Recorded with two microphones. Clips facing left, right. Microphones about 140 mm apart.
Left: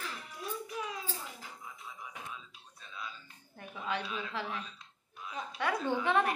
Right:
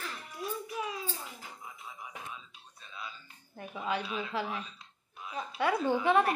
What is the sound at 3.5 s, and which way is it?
A woman's voice, 5° right (ahead or behind).